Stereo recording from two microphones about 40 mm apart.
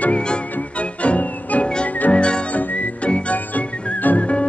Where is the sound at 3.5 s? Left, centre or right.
Left.